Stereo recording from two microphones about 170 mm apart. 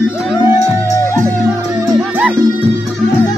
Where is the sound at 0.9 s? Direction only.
15° left (ahead or behind).